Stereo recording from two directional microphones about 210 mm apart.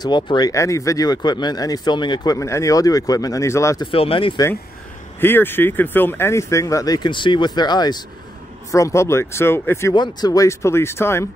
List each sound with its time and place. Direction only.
0.0 s speech: 20° left (ahead or behind)
5.2 s speech: 10° left (ahead or behind)